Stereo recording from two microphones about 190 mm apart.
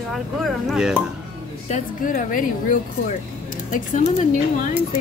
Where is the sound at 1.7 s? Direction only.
45° left (ahead or behind).